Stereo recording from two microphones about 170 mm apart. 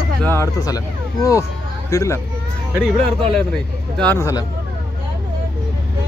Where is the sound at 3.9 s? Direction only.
10° left (ahead or behind).